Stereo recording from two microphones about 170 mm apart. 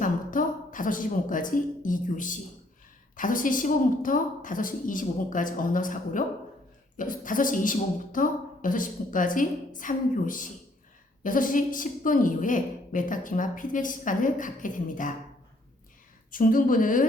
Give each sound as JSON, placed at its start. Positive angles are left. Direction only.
{"t": 0.0, "sound": "a woman's voice", "side_deg": 50}
{"t": 16.3, "sound": "a woman's voice", "side_deg": 55}